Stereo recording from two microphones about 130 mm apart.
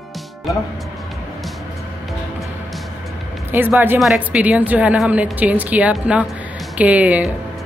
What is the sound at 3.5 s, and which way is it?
A woman's voice, 15° right (ahead or behind).